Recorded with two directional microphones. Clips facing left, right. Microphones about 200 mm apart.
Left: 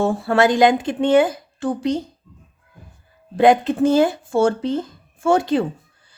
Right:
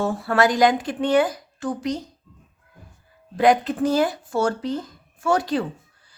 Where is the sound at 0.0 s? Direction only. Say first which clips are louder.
Left 3 dB; 25° left (ahead or behind).